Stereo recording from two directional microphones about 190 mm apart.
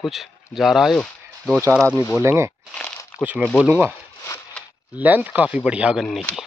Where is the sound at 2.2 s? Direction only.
15° right (ahead or behind).